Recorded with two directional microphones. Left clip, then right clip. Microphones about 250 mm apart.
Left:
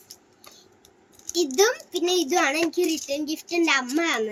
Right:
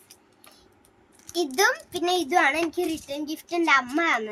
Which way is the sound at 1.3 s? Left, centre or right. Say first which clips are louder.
Left 1 dB; right.